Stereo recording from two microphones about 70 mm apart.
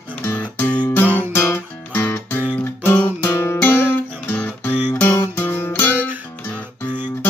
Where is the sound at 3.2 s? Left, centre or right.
Left.